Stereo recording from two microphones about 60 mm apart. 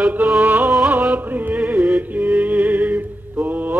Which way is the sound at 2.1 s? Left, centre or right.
Right.